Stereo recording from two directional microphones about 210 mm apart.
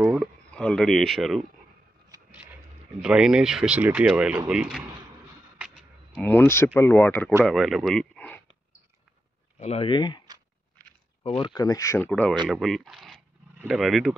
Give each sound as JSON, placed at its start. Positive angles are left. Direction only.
{"t": 0.0, "sound": "a sound", "side_deg": -5}
{"t": 0.5, "sound": "speech", "side_deg": 5}
{"t": 3.0, "sound": "speech", "side_deg": -5}
{"t": 9.6, "sound": "speech", "side_deg": 30}
{"t": 11.2, "sound": "speech", "side_deg": 25}
{"t": 12.1, "sound": "speech", "side_deg": 5}